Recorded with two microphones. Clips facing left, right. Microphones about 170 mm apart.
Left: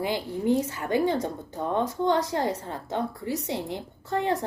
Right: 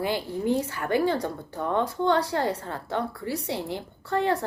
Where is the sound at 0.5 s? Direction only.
20° left (ahead or behind).